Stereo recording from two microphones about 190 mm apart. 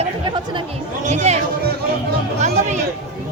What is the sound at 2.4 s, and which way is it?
Speech, 35° right (ahead or behind).